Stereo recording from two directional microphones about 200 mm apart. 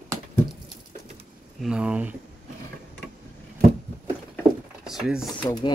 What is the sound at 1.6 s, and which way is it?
Speech, 5° right (ahead or behind).